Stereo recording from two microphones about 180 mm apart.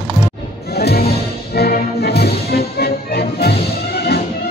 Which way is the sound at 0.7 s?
60° left (ahead or behind).